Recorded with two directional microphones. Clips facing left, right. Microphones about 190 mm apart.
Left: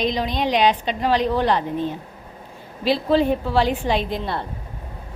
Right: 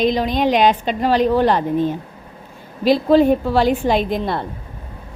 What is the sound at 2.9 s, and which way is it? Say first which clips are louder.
A woman's voice: right 5 dB; 45° right (ahead or behind).